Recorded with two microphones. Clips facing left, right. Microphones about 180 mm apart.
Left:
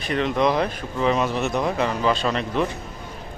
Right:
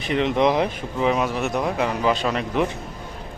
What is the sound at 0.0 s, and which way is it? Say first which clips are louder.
Speech: right 2 dB; 20° right (ahead or behind).